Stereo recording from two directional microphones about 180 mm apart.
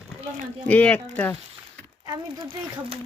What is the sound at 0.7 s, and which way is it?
Speech, 10° left (ahead or behind).